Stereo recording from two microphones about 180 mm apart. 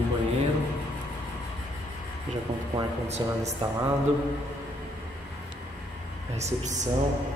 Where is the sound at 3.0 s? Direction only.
35° right (ahead or behind).